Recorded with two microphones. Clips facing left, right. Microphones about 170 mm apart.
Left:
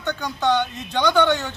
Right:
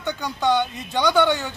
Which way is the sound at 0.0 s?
10° right (ahead or behind).